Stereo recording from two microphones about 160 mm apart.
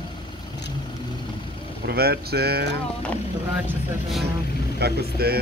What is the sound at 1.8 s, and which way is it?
Speech, 80° right.